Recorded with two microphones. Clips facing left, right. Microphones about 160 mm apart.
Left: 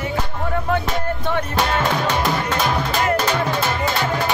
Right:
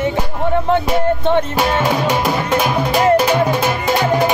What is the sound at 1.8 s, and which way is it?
Music, 10° right (ahead or behind).